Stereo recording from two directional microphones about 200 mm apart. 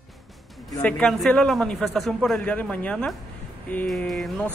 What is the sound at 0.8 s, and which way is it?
A man's voice, 5° left (ahead or behind).